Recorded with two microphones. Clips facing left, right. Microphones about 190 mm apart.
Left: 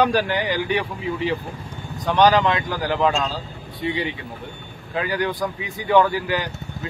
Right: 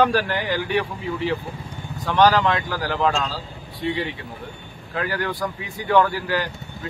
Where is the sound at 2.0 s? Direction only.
20° left (ahead or behind).